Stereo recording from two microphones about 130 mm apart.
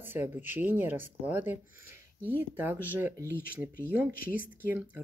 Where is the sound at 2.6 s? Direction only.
15° right (ahead or behind).